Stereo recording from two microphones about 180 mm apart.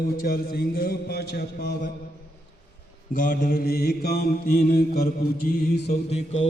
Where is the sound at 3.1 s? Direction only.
50° left (ahead or behind).